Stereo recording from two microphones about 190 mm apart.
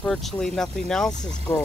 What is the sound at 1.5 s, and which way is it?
Speech, 15° left (ahead or behind).